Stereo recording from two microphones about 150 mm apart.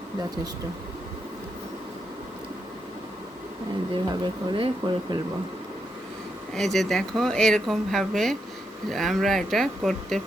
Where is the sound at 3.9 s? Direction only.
35° right (ahead or behind).